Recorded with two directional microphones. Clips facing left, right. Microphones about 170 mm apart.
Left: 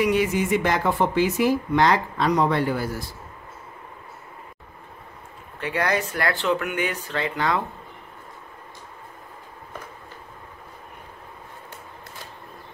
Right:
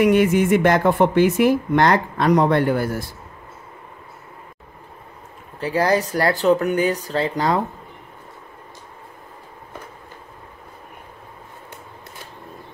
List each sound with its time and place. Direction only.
0.0 s speech: 55° right (ahead or behind)
5.6 s speech: 35° right (ahead or behind)